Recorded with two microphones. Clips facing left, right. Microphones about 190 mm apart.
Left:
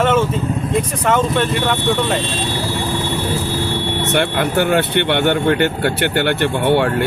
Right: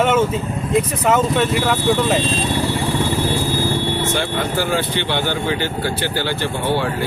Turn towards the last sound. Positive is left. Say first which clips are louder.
# left 5 dB
turn(degrees=65)  # may be behind; listen again after turning